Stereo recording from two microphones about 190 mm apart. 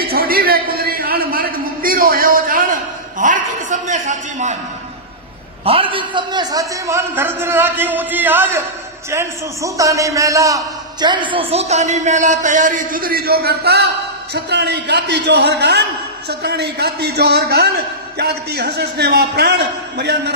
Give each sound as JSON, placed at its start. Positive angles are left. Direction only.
{"t": 0.0, "sound": "a sound", "side_deg": -50}
{"t": 3.2, "sound": "a man's voice", "side_deg": -45}
{"t": 5.6, "sound": "a man's voice", "side_deg": -30}